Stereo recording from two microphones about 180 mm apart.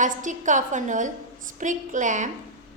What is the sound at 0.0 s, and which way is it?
A woman's voice, 45° right (ahead or behind).